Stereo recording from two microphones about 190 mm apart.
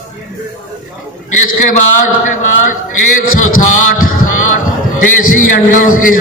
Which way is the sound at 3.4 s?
45° left (ahead or behind).